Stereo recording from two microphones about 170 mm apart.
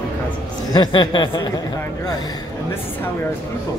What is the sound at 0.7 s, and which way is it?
Speech, 25° left (ahead or behind).